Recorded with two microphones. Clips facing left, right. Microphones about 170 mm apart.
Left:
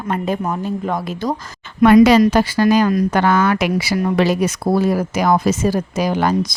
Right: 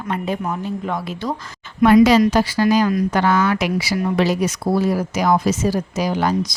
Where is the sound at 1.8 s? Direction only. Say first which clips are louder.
Left 2 dB; 55° left (ahead or behind).